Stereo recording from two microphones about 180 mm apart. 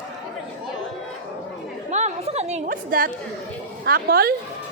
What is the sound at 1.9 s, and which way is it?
Chatter, 40° right (ahead or behind).